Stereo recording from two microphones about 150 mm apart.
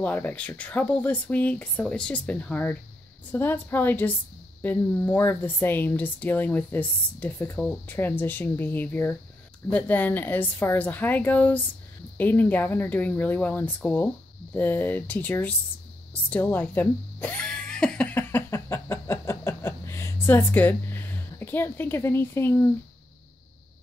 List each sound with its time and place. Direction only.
0.0 s speech: 10° left (ahead or behind)
16.1 s music: 10° left (ahead or behind)